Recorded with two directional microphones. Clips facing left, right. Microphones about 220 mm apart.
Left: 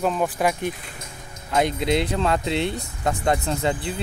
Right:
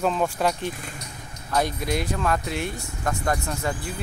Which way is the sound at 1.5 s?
25° left (ahead or behind).